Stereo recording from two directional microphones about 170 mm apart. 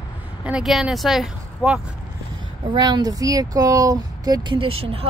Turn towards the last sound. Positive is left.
turn(degrees=-35)  # may be behind; listen again after turning